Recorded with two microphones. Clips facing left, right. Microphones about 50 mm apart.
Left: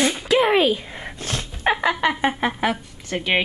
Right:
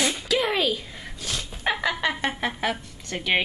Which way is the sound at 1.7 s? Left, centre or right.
Centre.